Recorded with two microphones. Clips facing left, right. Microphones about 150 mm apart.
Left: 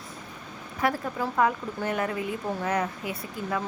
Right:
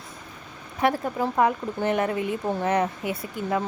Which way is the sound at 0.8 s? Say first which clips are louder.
Right 4 dB; 25° right (ahead or behind).